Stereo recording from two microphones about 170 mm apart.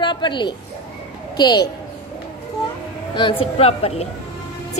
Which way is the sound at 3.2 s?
30° left (ahead or behind).